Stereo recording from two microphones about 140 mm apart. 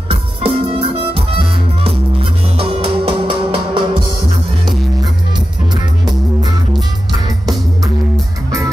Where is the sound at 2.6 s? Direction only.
40° right (ahead or behind).